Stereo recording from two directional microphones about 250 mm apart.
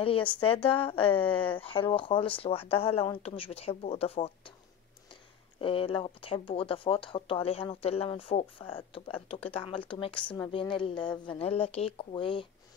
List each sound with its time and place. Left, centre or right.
0.4 s speech: left
1.2 s speech: centre
1.6 s speech: left
5.6 s speech: left